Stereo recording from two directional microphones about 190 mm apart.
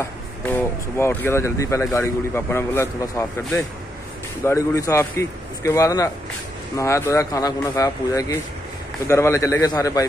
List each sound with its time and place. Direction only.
0.5 s speech: 10° left (ahead or behind)